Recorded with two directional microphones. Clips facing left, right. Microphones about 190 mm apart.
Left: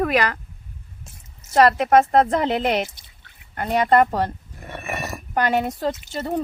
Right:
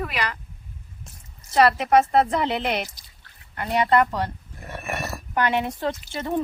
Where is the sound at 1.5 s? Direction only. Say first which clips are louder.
Left 2 dB; 45° left (ahead or behind).